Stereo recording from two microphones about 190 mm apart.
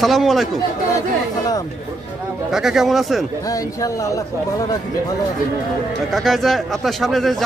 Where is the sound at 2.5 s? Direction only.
Centre (ahead or behind).